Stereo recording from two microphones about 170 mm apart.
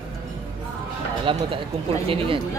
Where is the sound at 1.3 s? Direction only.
30° right (ahead or behind).